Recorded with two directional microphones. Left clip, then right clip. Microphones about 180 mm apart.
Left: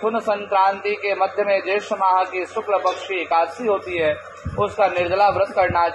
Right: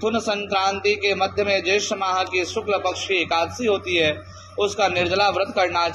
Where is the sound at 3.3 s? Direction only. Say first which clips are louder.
Left 2 dB; 35° right (ahead or behind).